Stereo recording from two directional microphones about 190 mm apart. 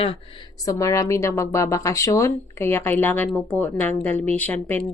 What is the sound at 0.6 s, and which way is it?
Speech, 15° left (ahead or behind).